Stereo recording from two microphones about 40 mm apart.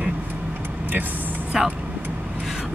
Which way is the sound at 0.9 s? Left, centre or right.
Right.